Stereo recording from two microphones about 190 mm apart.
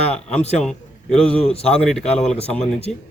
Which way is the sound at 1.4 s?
30° left (ahead or behind).